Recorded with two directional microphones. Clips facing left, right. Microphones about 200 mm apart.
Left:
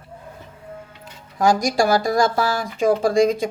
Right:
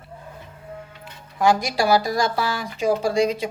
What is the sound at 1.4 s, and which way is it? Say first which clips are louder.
Speech: left 2 dB; 40° left (ahead or behind).